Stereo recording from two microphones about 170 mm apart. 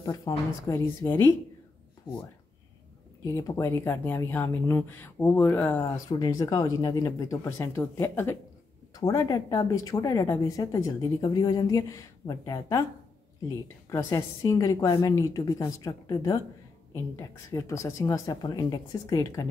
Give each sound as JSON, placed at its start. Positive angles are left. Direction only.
{"t": 0.0, "sound": "a woman's voice", "side_deg": 20}
{"t": 3.3, "sound": "speech", "side_deg": 15}
{"t": 5.9, "sound": "speech", "side_deg": 20}
{"t": 13.8, "sound": "speech", "side_deg": 15}